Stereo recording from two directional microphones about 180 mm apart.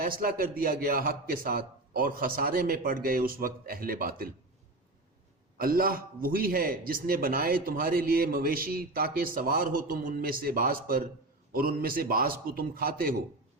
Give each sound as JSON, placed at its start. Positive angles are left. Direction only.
{"t": 0.0, "sound": "a man's voice", "side_deg": -55}
{"t": 5.5, "sound": "a man's voice", "side_deg": -55}